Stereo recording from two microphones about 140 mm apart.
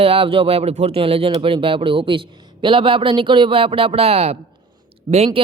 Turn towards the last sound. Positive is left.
turn(degrees=-50)  # may be behind; listen again after turning